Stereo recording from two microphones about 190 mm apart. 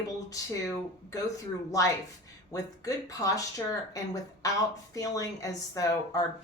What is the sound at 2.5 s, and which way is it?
Speech, 20° left (ahead or behind).